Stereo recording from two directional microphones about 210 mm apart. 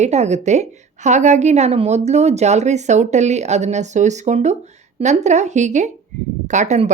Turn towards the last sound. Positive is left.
turn(degrees=-35)  # may be behind; listen again after turning